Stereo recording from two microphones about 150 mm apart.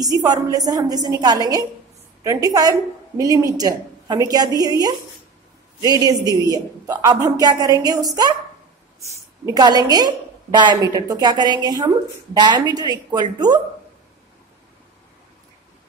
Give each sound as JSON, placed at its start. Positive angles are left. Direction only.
{"t": 0.0, "sound": "a woman's voice", "side_deg": -25}
{"t": 9.5, "sound": "a woman's voice", "side_deg": -25}